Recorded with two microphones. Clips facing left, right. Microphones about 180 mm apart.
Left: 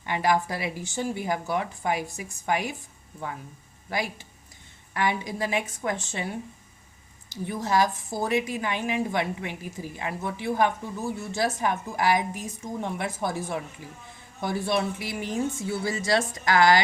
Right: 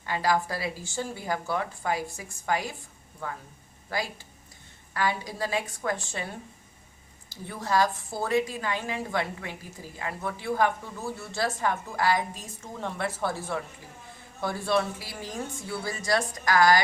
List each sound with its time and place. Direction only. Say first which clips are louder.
0.0 s a woman's voice: left 2 dB; 20° left (ahead or behind)
4.9 s a woman's voice: left 2 dB; 20° left (ahead or behind)
7.3 s a woman's voice: left 3 dB; 20° left (ahead or behind)